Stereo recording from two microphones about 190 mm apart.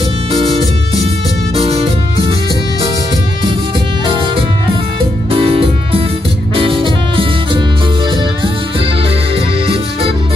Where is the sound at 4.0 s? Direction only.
25° right (ahead or behind).